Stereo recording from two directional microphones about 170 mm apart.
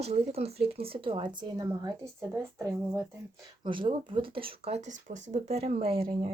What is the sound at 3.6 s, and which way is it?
Speech, 30° right (ahead or behind).